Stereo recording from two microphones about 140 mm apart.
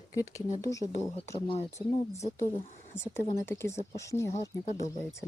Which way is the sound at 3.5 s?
20° left (ahead or behind).